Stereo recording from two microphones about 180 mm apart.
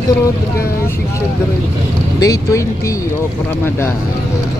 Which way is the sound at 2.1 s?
20° left (ahead or behind).